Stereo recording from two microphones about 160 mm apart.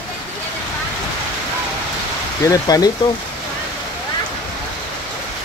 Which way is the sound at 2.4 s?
20° left (ahead or behind).